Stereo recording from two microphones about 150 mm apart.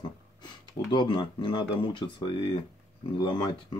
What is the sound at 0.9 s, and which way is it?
Speech, 30° left (ahead or behind).